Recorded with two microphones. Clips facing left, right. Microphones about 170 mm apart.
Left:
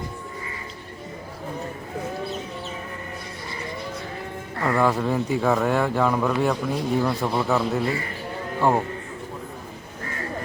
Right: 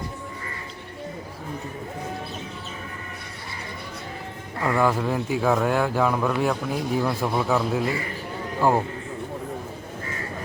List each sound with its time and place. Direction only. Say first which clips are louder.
4.6 s speech: left 1 dB; centre (ahead or behind)